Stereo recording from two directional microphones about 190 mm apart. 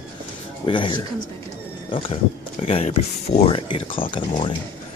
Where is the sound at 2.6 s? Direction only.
30° left (ahead or behind).